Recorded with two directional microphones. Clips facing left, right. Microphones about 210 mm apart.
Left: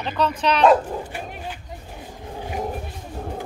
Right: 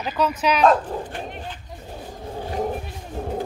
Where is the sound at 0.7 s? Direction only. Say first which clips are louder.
Left 3 dB; 10° left (ahead or behind).